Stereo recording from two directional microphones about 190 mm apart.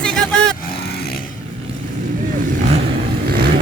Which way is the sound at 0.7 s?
55° left (ahead or behind).